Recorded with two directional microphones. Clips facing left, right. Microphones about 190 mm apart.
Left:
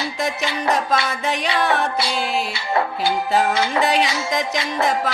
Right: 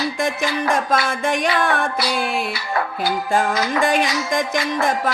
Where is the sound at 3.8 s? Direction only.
50° right (ahead or behind).